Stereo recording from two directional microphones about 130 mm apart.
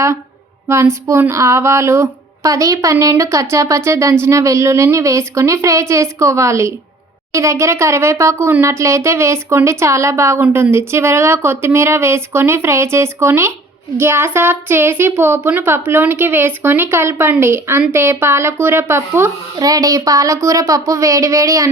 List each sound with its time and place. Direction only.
0.7 s speech: 20° right (ahead or behind)